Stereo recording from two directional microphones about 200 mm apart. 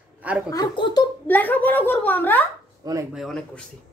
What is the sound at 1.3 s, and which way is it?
A woman's voice, 10° left (ahead or behind).